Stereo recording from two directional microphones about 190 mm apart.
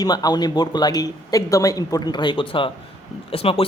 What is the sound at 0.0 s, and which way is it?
Speech, 20° left (ahead or behind).